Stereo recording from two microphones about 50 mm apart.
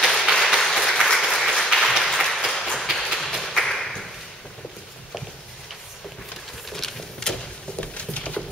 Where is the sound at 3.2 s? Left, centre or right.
Centre.